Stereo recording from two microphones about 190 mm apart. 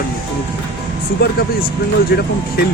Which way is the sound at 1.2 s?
55° left (ahead or behind).